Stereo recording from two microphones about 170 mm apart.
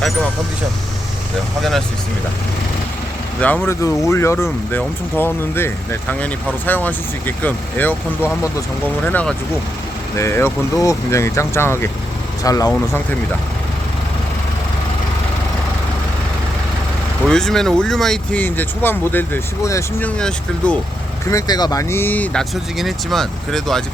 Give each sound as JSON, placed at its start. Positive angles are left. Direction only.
{"t": 3.4, "sound": "speech", "side_deg": 10}
{"t": 17.2, "sound": "speech", "side_deg": 5}
{"t": 21.2, "sound": "speech", "side_deg": 20}